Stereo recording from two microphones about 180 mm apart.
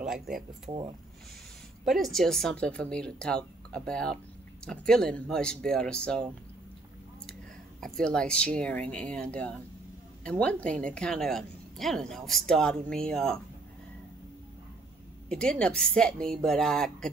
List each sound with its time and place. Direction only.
0.0 s a sound: 5° right (ahead or behind)
0.7 s speech: 25° right (ahead or behind)
1.9 s speech: centre (ahead or behind)
7.8 s speech: 5° left (ahead or behind)
15.2 s speech: 5° left (ahead or behind)